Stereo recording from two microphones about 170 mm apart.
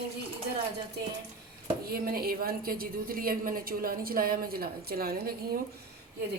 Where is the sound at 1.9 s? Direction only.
60° right (ahead or behind).